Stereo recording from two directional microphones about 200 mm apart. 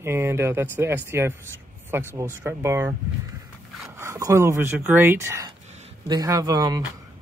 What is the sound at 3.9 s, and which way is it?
A man's voice, 15° right (ahead or behind).